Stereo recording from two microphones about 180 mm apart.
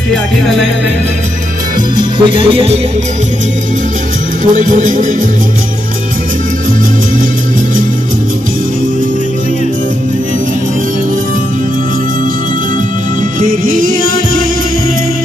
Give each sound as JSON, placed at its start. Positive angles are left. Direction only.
{"t": 2.0, "sound": "music", "side_deg": -25}
{"t": 4.5, "sound": "music", "side_deg": -45}
{"t": 13.4, "sound": "music", "side_deg": -50}